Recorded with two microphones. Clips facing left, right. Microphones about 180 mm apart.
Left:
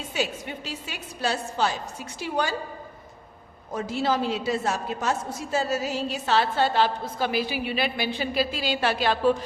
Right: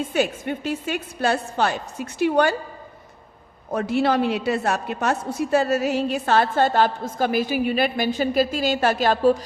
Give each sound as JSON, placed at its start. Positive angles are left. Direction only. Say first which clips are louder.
{"t": 0.0, "sound": "a woman's voice", "louder": "right 7 dB", "side_deg": -55}
{"t": 3.7, "sound": "a woman's voice", "louder": "right 5 dB", "side_deg": -60}